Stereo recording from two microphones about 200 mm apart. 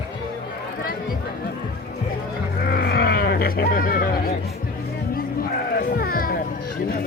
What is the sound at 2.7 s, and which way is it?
Vehicle, 50° left (ahead or behind).